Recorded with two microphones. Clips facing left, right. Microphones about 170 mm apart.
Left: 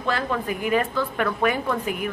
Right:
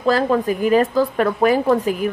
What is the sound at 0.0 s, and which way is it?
A woman's voice, 35° right (ahead or behind).